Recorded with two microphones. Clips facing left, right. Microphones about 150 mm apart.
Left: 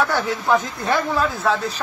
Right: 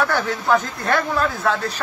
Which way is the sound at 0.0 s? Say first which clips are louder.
Even; 10° left (ahead or behind).